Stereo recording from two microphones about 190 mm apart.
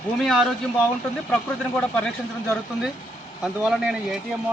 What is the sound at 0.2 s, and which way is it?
Speech, centre (ahead or behind).